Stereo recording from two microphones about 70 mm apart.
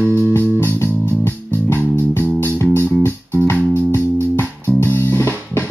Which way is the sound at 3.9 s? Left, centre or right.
Left.